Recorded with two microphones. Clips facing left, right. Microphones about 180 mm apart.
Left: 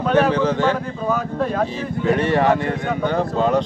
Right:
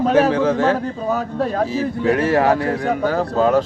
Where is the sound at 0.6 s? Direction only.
40° right (ahead or behind).